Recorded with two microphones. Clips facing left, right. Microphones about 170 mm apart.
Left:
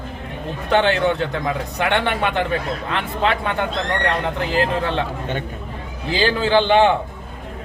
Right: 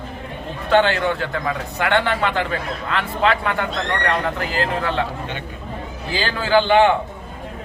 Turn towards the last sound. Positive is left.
turn(degrees=20)  # may be behind; listen again after turning